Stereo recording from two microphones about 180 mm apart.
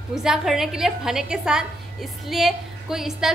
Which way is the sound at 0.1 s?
5° right (ahead or behind).